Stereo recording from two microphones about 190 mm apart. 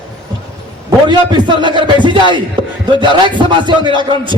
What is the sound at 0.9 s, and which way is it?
A man's voice, 25° right (ahead or behind).